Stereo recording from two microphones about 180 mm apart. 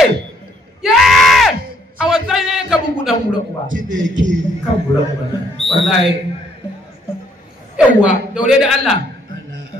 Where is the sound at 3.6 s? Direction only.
45° right (ahead or behind).